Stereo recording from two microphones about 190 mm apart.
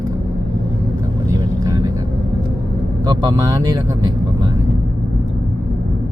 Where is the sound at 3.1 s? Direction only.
20° right (ahead or behind).